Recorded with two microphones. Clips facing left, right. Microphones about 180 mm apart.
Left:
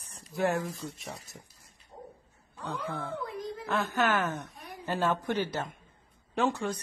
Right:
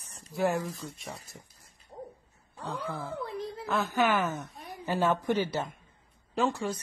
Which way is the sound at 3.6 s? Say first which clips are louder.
Right 1 dB; 5° right (ahead or behind).